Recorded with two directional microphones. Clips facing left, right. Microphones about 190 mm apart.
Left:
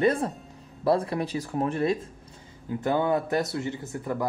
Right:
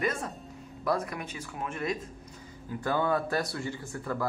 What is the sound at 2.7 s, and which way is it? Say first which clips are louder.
Speech: left 4 dB; 20° left (ahead or behind).